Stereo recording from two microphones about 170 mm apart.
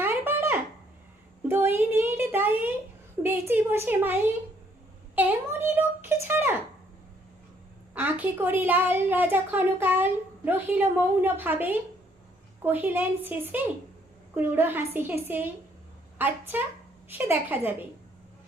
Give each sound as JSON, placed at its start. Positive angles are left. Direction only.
{"t": 0.0, "sound": "a sound", "side_deg": -10}
{"t": 1.5, "sound": "a woman's voice", "side_deg": -10}
{"t": 7.9, "sound": "a woman's voice", "side_deg": -10}